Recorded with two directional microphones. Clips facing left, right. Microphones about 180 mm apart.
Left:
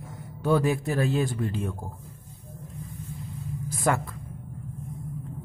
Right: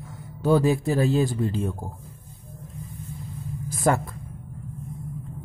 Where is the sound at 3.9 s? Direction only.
35° right (ahead or behind).